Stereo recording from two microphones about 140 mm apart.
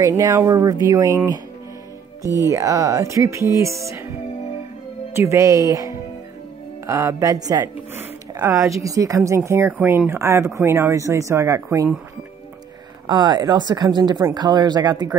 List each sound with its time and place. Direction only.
0.2 s speech: 20° right (ahead or behind)
2.2 s speech: 25° left (ahead or behind)
2.5 s speech: 25° right (ahead or behind)
5.1 s speech: 20° right (ahead or behind)
13.0 s speech: 30° right (ahead or behind)